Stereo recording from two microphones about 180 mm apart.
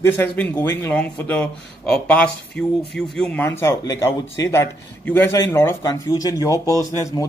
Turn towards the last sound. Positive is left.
turn(degrees=20)  # may be behind; listen again after turning